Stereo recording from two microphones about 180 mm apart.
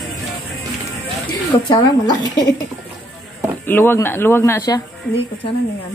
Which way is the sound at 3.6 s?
10° left (ahead or behind).